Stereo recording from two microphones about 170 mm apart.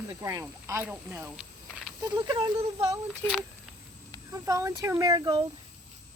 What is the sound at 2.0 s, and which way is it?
Speech, 25° right (ahead or behind).